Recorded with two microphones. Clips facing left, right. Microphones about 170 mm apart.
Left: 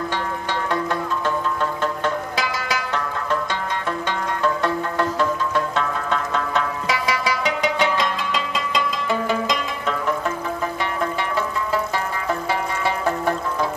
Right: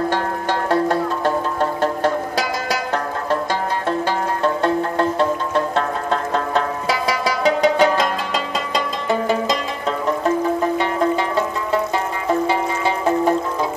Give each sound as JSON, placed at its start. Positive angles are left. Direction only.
{"t": 0.1, "sound": "music", "side_deg": -40}
{"t": 4.4, "sound": "music", "side_deg": -30}